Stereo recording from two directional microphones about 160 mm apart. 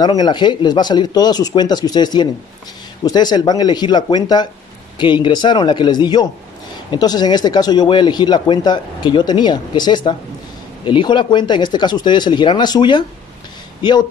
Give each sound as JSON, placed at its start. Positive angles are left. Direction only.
{"t": 0.0, "sound": "speech", "side_deg": 25}